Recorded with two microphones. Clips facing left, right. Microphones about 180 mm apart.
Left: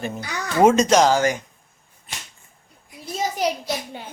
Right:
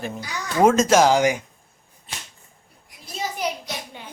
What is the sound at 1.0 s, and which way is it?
Speech, 15° right (ahead or behind).